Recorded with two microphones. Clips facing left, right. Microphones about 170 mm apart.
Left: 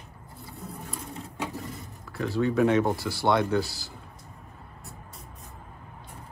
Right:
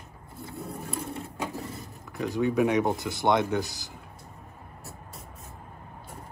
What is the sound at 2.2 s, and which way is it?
Speech, 15° right (ahead or behind).